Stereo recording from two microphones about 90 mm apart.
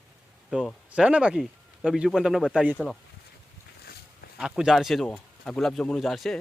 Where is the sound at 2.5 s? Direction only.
15° right (ahead or behind).